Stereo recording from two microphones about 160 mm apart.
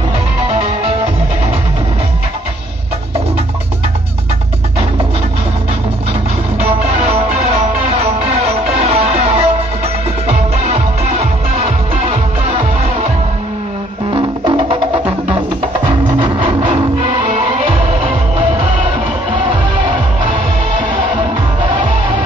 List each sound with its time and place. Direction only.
8.8 s music: 40° right (ahead or behind)
14.1 s music: 35° right (ahead or behind)
16.2 s music: 30° right (ahead or behind)
17.3 s music: 40° right (ahead or behind)